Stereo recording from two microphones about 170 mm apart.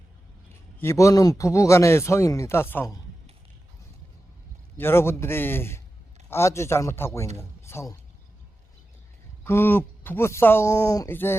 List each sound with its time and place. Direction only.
0.8 s speech: 15° left (ahead or behind)
4.8 s speech: 15° left (ahead or behind)
9.4 s speech: 15° left (ahead or behind)